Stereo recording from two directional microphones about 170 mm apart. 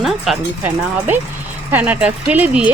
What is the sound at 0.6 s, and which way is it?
Speech, 10° right (ahead or behind).